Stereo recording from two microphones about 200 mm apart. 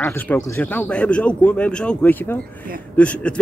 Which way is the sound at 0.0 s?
10° left (ahead or behind).